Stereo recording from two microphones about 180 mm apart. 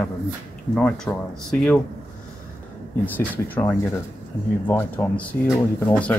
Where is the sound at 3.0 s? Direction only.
10° left (ahead or behind).